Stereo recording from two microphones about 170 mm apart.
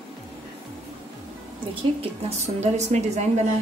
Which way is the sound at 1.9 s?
40° right (ahead or behind).